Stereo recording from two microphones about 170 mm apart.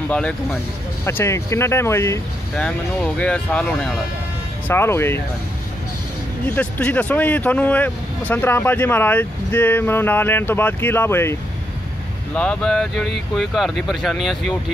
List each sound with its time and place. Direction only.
0.1 s speech: 5° left (ahead or behind)
6.5 s speech: 10° left (ahead or behind)
12.4 s speech: 5° left (ahead or behind)